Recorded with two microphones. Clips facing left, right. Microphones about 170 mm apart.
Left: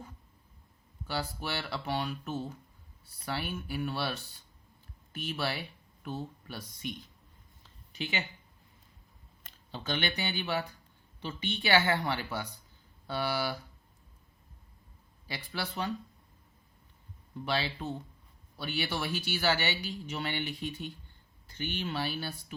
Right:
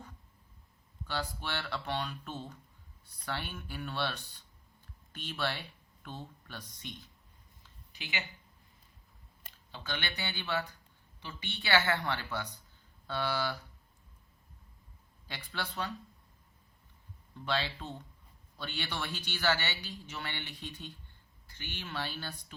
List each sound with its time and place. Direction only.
1.0 s speech: 10° left (ahead or behind)
9.7 s speech: 20° left (ahead or behind)
15.3 s speech: 10° left (ahead or behind)
17.4 s speech: 10° left (ahead or behind)